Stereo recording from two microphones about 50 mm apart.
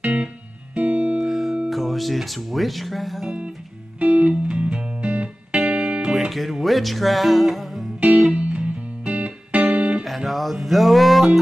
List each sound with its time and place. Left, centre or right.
0.0 s music: right
1.2 s music: centre
1.7 s speech: centre
4.0 s music: right
6.1 s music: centre
8.0 s music: right
10.0 s music: centre